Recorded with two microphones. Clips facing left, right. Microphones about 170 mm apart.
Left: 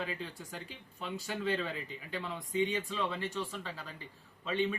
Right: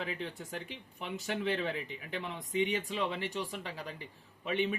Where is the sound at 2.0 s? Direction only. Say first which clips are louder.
Even; 20° right (ahead or behind).